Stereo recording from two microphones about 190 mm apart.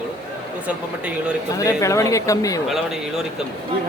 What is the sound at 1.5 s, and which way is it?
Speech, 15° left (ahead or behind).